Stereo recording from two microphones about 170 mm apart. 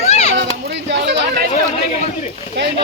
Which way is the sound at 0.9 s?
90° right.